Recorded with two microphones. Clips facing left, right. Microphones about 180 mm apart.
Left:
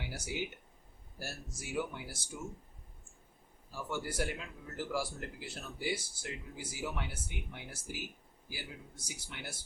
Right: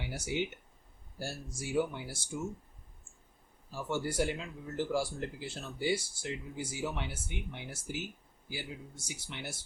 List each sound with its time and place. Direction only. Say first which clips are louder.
0.1 s speech: right 6 dB; 25° right (ahead or behind)
3.7 s speech: right 4 dB; 25° right (ahead or behind)